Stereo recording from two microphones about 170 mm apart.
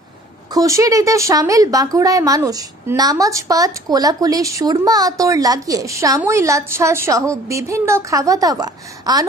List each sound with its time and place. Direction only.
0.6 s a woman's voice: 20° right (ahead or behind)